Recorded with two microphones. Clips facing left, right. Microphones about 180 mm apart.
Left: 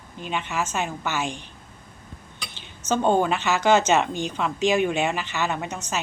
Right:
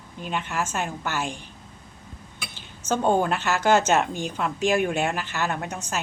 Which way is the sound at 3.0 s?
5° right (ahead or behind).